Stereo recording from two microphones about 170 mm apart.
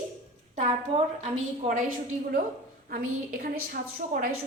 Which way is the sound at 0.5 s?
40° right (ahead or behind).